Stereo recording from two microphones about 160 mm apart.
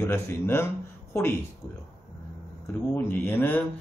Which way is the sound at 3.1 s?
10° left (ahead or behind).